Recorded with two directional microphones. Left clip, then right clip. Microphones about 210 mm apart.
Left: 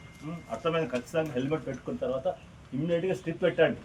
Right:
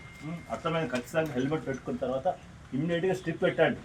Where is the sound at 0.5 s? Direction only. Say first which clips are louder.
Left 2 dB; 5° right (ahead or behind).